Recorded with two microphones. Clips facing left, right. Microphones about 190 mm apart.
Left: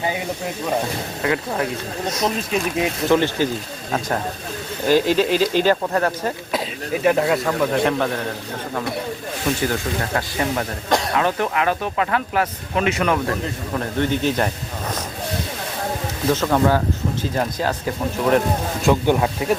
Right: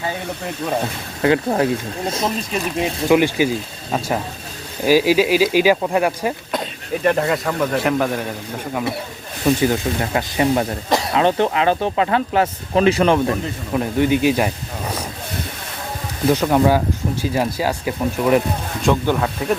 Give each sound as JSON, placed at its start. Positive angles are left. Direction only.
{"t": 1.2, "sound": "speech", "side_deg": -30}
{"t": 2.2, "sound": "speech", "side_deg": 0}
{"t": 3.1, "sound": "speech", "side_deg": -10}
{"t": 4.9, "sound": "speech", "side_deg": -10}
{"t": 6.5, "sound": "speech", "side_deg": 5}
{"t": 9.6, "sound": "speech", "side_deg": -20}
{"t": 10.8, "sound": "speech", "side_deg": 0}
{"t": 11.1, "sound": "speech", "side_deg": -25}
{"t": 13.7, "sound": "speech", "side_deg": -10}
{"t": 16.3, "sound": "speech", "side_deg": -15}
{"t": 18.9, "sound": "speech", "side_deg": 15}